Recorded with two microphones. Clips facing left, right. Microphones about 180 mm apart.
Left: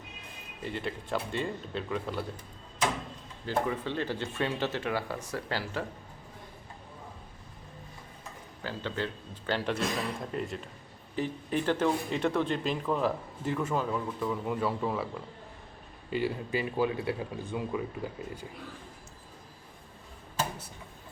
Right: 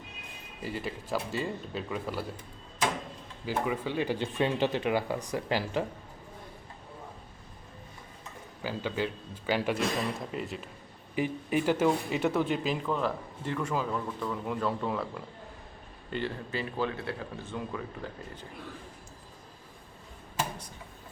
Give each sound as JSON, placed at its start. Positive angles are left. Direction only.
{"t": 0.6, "sound": "speech", "side_deg": -5}
{"t": 3.4, "sound": "speech", "side_deg": -10}
{"t": 8.6, "sound": "speech", "side_deg": -10}